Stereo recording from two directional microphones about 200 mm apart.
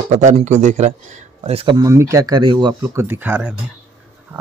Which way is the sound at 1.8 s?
15° right (ahead or behind).